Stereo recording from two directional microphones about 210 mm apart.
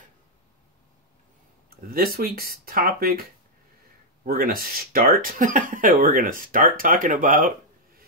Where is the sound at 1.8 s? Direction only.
45° right (ahead or behind).